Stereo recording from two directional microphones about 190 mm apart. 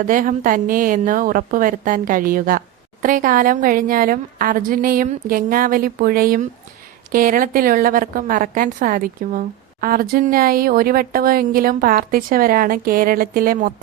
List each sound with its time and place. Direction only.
0.0 s a woman's voice: 45° right (ahead or behind)